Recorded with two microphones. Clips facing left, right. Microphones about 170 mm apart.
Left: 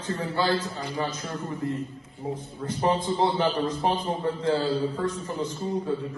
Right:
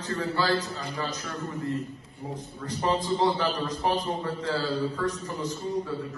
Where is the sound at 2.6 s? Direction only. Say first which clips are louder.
Left 2 dB; 25° left (ahead or behind).